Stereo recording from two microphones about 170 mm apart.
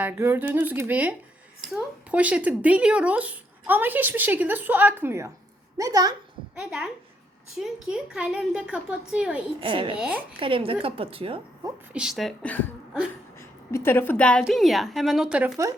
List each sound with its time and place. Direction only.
0.0 s a woman's voice: 10° right (ahead or behind)
6.6 s a woman's voice: 5° right (ahead or behind)
9.6 s a woman's voice: 30° right (ahead or behind)
10.0 s speech: 5° right (ahead or behind)
10.4 s a woman's voice: 30° right (ahead or behind)
11.9 s a woman's voice: centre (ahead or behind)
13.7 s a woman's voice: 15° left (ahead or behind); by 15.5 s 5° right (ahead or behind)